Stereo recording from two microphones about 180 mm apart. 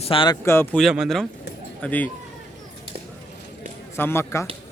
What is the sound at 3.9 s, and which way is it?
Speech, 15° left (ahead or behind).